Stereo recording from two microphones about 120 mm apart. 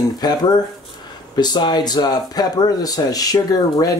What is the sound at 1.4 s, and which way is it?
Speech, 35° left (ahead or behind).